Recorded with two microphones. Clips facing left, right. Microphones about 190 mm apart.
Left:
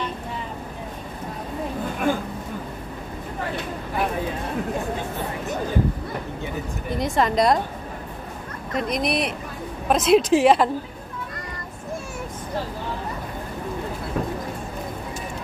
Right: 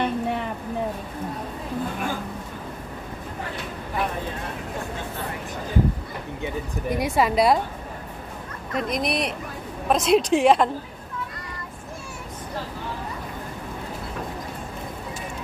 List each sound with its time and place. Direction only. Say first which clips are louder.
0.0 s vehicle: right 6 dB; 65° right (ahead or behind)
6.9 s a woman's voice: even; 10° right (ahead or behind)
8.7 s a woman's voice: left 1 dB; centre (ahead or behind)